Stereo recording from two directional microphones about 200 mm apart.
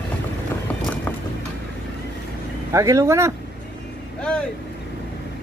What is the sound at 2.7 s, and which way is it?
Speech, 15° right (ahead or behind).